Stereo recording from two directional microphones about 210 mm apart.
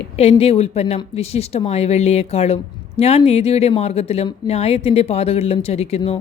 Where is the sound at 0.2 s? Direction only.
30° left (ahead or behind).